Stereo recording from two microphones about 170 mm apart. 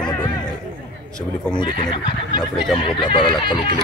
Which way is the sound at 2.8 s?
30° left (ahead or behind).